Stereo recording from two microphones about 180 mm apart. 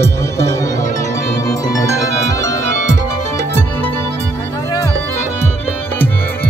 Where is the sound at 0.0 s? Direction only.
15° left (ahead or behind).